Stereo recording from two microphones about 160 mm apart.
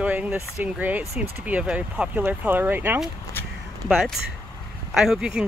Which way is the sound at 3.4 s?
15° left (ahead or behind).